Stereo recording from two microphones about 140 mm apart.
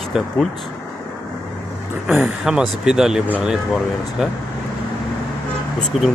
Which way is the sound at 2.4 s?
5° right (ahead or behind).